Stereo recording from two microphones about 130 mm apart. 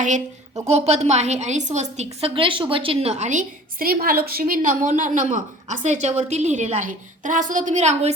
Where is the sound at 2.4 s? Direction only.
40° right (ahead or behind).